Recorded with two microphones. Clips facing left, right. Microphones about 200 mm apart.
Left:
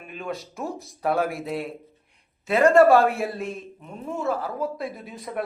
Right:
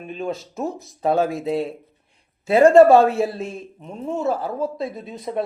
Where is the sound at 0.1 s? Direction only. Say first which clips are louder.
Right 5 dB; 25° right (ahead or behind).